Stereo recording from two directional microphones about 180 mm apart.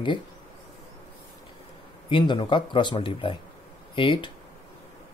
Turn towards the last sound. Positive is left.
turn(degrees=30)  # may be behind; listen again after turning